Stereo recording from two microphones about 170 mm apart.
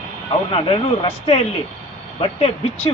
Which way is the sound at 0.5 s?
30° left (ahead or behind).